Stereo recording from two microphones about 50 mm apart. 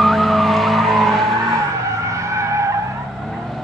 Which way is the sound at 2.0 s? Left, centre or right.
Right.